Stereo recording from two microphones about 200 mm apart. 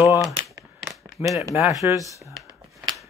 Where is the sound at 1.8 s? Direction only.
15° right (ahead or behind).